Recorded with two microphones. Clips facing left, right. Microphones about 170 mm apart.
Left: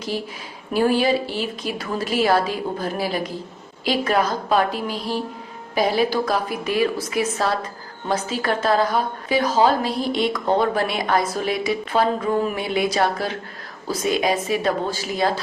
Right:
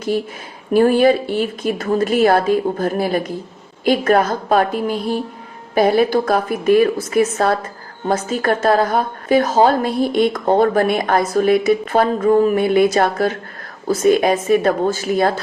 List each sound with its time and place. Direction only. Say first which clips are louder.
0.7 s a woman's voice: right 6 dB; 50° right (ahead or behind)